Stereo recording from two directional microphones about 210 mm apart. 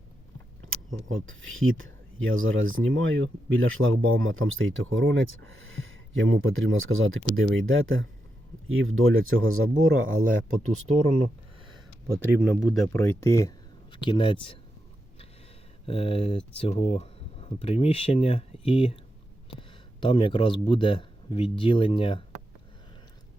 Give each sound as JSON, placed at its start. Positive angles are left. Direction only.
{"t": 0.7, "sound": "speech", "side_deg": -70}
{"t": 10.8, "sound": "speech", "side_deg": -30}
{"t": 12.5, "sound": "speech", "side_deg": 15}
{"t": 15.9, "sound": "speech", "side_deg": 25}